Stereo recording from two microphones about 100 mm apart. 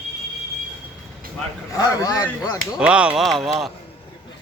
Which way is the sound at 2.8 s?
10° right (ahead or behind).